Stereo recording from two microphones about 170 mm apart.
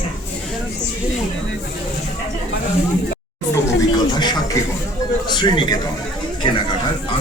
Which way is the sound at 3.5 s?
20° left (ahead or behind).